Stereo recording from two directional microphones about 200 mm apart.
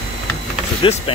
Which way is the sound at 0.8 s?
25° left (ahead or behind).